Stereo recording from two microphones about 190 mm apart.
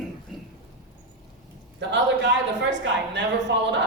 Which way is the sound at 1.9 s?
65° right (ahead or behind).